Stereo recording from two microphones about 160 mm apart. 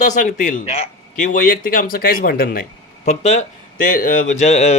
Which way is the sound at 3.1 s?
45° left (ahead or behind).